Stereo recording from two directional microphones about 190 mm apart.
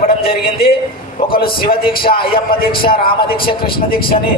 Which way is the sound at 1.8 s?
25° left (ahead or behind).